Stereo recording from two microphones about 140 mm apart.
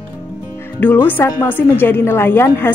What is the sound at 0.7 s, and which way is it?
Speech, 10° left (ahead or behind).